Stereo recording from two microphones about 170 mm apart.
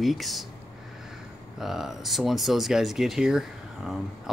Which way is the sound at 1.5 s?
Centre (ahead or behind).